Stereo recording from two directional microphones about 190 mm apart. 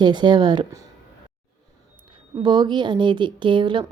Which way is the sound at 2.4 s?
25° right (ahead or behind).